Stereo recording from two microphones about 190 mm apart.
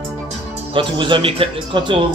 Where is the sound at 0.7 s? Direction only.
25° right (ahead or behind).